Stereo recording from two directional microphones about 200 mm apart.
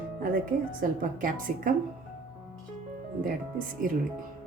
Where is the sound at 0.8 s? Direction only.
45° right (ahead or behind).